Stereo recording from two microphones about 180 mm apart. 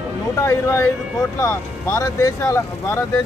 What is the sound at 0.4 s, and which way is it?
Speech, 15° left (ahead or behind).